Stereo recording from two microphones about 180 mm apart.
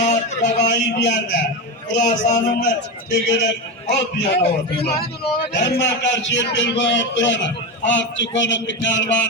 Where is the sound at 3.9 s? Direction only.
65° left (ahead or behind).